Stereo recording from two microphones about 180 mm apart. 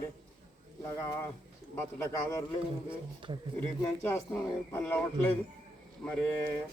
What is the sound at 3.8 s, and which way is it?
Speech, 15° left (ahead or behind).